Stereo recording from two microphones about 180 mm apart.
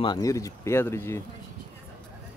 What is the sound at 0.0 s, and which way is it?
Speech, 20° left (ahead or behind).